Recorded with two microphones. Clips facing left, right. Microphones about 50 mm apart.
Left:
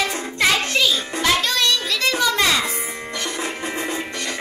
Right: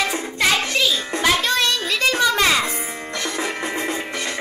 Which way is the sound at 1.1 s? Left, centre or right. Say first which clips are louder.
Right 1 dB; centre.